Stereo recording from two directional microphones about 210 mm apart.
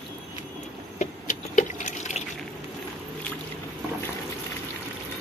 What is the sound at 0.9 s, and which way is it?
Drip, 35° left (ahead or behind).